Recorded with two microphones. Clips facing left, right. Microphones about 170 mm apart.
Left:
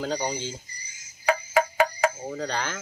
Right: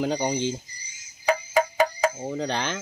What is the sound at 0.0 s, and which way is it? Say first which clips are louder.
Speech: right 4 dB; 15° right (ahead or behind).